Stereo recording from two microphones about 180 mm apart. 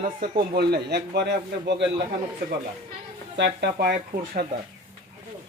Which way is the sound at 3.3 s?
70° right (ahead or behind).